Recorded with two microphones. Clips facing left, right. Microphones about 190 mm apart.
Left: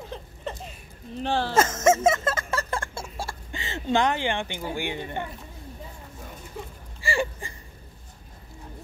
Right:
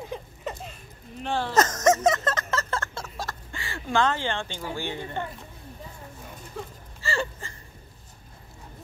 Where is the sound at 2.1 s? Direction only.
10° left (ahead or behind).